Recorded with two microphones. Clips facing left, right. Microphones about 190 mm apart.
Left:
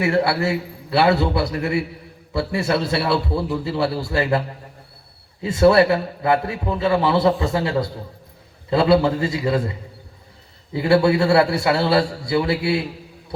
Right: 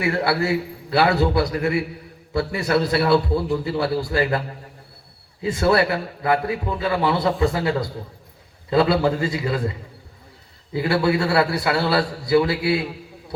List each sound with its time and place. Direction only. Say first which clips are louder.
0.0 s a man's voice: left 2 dB; 25° left (ahead or behind)
10.8 s a man's voice: left 4 dB; 25° left (ahead or behind)